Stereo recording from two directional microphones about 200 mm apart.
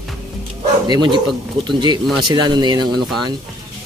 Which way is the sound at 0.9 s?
20° right (ahead or behind).